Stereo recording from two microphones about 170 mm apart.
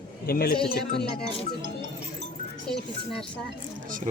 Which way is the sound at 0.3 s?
60° left (ahead or behind).